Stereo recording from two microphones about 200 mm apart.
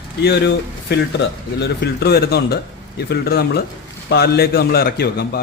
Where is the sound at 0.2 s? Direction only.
60° left (ahead or behind).